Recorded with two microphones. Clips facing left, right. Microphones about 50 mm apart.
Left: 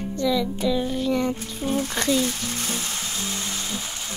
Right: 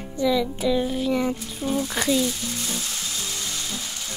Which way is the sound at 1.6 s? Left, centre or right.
Centre.